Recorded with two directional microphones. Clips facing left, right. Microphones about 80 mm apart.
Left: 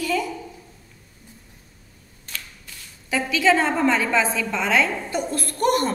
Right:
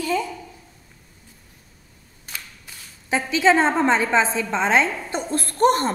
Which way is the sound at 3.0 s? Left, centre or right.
Right.